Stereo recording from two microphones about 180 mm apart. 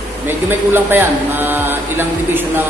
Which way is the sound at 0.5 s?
10° right (ahead or behind).